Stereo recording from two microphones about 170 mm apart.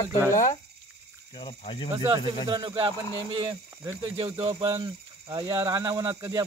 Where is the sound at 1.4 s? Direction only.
30° left (ahead or behind).